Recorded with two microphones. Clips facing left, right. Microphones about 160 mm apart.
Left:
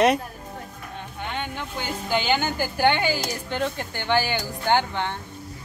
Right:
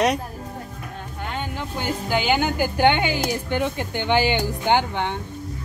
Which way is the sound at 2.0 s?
10° right (ahead or behind).